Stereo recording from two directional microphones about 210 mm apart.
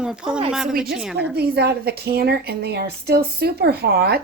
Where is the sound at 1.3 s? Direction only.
50° right (ahead or behind).